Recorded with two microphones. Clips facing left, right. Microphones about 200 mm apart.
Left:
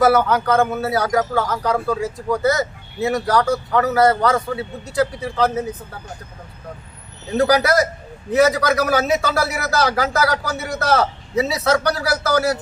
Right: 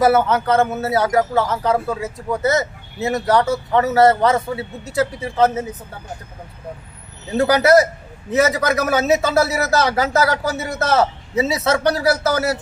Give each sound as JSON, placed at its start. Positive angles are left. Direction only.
{"t": 0.0, "sound": "a man's voice", "side_deg": -25}
{"t": 7.3, "sound": "a man's voice", "side_deg": -25}